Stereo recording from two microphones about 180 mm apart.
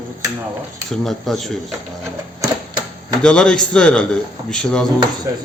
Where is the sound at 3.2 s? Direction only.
5° left (ahead or behind).